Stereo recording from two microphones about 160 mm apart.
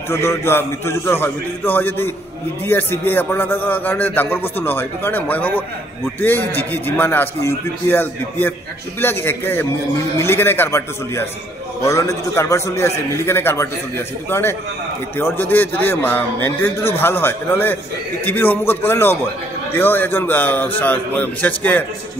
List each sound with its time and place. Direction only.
0.1 s a man's voice: 15° left (ahead or behind)